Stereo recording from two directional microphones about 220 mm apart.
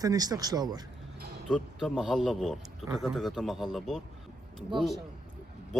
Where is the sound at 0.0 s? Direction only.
15° right (ahead or behind).